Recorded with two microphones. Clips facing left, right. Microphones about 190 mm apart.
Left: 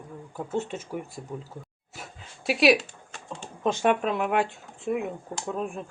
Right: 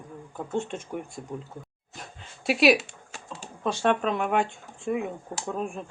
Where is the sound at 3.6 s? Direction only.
15° left (ahead or behind).